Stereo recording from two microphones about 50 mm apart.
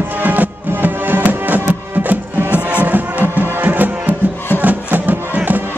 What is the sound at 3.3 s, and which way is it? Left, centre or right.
Music, right.